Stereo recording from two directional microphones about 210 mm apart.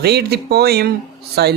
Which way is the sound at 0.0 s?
50° right (ahead or behind).